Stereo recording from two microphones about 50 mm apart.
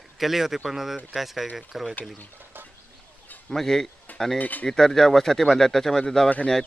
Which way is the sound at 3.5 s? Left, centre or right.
Centre.